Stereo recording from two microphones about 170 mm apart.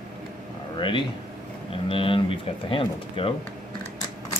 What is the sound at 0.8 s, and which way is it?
Speech, 30° left (ahead or behind).